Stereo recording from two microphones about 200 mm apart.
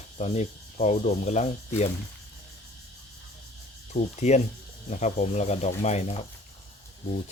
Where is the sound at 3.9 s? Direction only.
35° left (ahead or behind).